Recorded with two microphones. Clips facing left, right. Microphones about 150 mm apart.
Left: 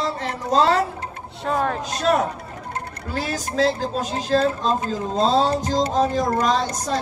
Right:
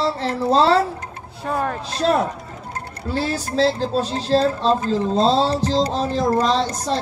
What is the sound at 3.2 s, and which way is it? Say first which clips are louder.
A woman's voice: right 2 dB; 35° right (ahead or behind).